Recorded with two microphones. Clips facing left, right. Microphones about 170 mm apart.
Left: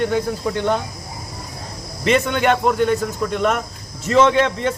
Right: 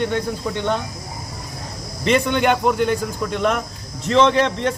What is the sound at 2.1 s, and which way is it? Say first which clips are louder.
Speech: even; centre (ahead or behind).